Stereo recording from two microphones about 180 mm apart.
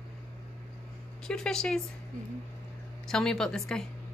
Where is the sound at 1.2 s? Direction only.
5° left (ahead or behind).